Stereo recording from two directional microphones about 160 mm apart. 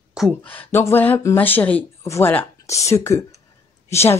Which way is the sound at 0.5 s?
15° left (ahead or behind).